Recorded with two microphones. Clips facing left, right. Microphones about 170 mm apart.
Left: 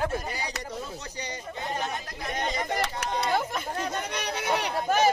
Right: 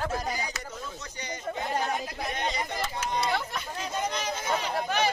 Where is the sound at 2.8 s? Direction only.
65° left (ahead or behind).